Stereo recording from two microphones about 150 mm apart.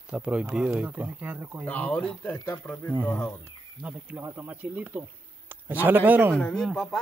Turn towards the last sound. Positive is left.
turn(degrees=5)  # may be behind; listen again after turning